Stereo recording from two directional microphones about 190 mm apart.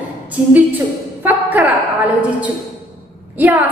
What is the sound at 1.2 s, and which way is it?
Music, 10° right (ahead or behind).